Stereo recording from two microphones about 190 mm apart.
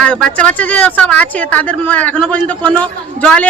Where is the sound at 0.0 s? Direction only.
5° left (ahead or behind).